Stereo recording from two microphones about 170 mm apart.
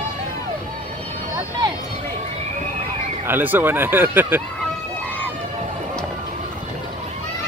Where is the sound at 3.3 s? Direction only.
10° right (ahead or behind).